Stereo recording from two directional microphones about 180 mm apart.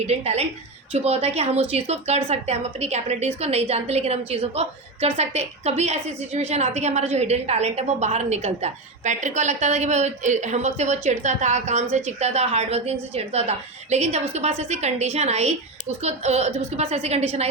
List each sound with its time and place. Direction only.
0.1 s a woman's voice: 35° right (ahead or behind)